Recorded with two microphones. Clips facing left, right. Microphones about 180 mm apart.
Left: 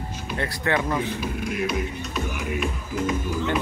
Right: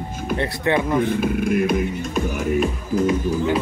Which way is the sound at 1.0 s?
55° right (ahead or behind).